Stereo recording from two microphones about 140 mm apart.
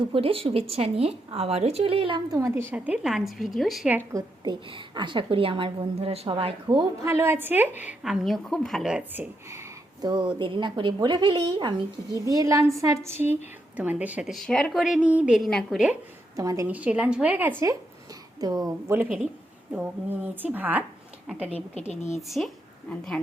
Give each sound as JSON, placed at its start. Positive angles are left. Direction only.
{"t": 0.1, "sound": "a woman's voice", "side_deg": -40}
{"t": 2.4, "sound": "a woman's voice", "side_deg": -15}
{"t": 4.1, "sound": "a woman's voice", "side_deg": -30}
{"t": 7.0, "sound": "a woman's voice", "side_deg": -20}
{"t": 10.0, "sound": "a woman's voice", "side_deg": -30}
{"t": 12.2, "sound": "a woman's voice", "side_deg": -25}
{"t": 16.3, "sound": "a woman's voice", "side_deg": -25}
{"t": 16.6, "sound": "a woman's voice", "side_deg": -10}
{"t": 18.3, "sound": "a woman's voice", "side_deg": -30}
{"t": 18.9, "sound": "a woman's voice", "side_deg": -15}
{"t": 21.8, "sound": "speech", "side_deg": 55}
{"t": 22.3, "sound": "a woman's voice", "side_deg": 0}